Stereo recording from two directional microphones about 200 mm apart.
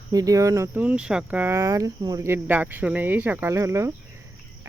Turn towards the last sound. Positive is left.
turn(degrees=-15)  # may be behind; listen again after turning